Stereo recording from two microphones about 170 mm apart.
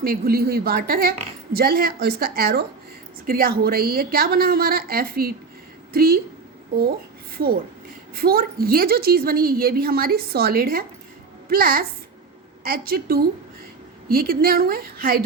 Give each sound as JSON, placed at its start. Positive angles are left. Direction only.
{"t": 0.0, "sound": "a woman's voice", "side_deg": -60}
{"t": 7.3, "sound": "a woman's voice", "side_deg": -70}